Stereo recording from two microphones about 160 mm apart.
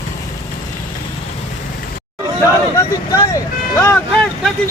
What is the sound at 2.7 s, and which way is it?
Vehicle, 20° left (ahead or behind).